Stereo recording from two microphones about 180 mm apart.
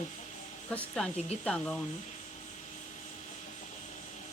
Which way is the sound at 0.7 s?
5° left (ahead or behind).